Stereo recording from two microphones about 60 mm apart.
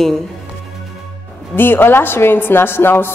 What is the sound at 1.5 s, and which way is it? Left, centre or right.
A man's voice, left.